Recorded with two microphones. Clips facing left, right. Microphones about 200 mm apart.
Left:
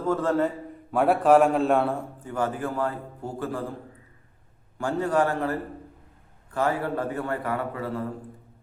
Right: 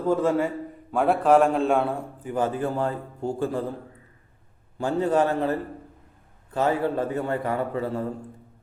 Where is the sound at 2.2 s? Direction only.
20° right (ahead or behind).